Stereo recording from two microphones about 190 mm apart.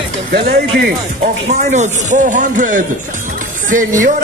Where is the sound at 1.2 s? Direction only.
40° right (ahead or behind).